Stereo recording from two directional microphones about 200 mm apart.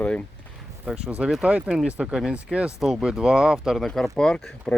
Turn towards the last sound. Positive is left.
turn(degrees=5)  # may be behind; listen again after turning